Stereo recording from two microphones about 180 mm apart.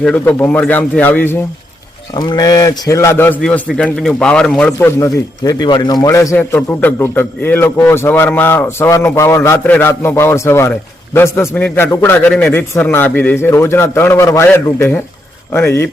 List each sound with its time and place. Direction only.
0.0 s a man's voice: 10° left (ahead or behind)
2.1 s a man's voice: 25° left (ahead or behind)